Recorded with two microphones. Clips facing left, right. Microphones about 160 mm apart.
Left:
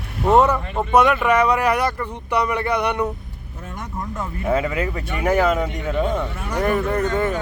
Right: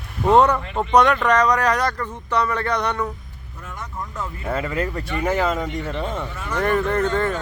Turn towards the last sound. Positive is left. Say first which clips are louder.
# even
turn(degrees=10)  # may be behind; listen again after turning